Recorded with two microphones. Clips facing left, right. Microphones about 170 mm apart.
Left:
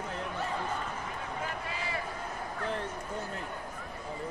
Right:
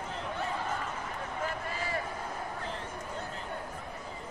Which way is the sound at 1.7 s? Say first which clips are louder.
Right 1 dB; 45° right (ahead or behind).